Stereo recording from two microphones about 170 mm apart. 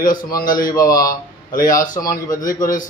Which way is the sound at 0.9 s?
20° left (ahead or behind).